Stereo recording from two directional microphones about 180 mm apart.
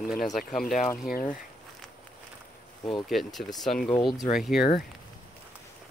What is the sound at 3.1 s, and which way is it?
Speech, centre (ahead or behind).